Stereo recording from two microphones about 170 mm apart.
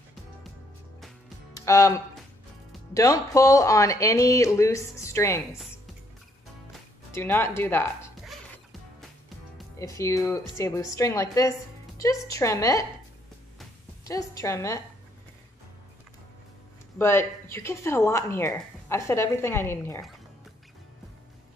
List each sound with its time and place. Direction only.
1.7 s speech: 20° left (ahead or behind)
7.1 s speech: 15° left (ahead or behind)
9.8 s speech: 20° left (ahead or behind)
14.0 s speech: 20° left (ahead or behind)
17.0 s speech: 15° left (ahead or behind)